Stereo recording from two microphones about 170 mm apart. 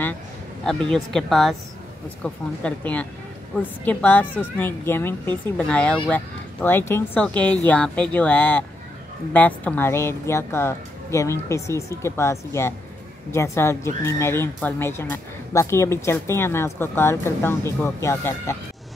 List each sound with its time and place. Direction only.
0.9 s speech: centre (ahead or behind)